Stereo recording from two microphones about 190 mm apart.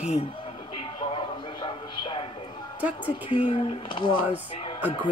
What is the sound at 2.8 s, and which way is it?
Speech, 10° right (ahead or behind).